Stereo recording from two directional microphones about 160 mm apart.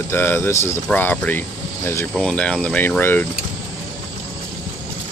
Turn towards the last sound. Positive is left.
turn(degrees=10)  # may be behind; listen again after turning